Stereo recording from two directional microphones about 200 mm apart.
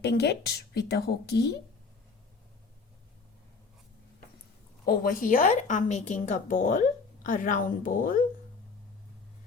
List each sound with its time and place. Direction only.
0.0 s a woman's voice: 55° left (ahead or behind)
4.9 s a woman's voice: 45° left (ahead or behind)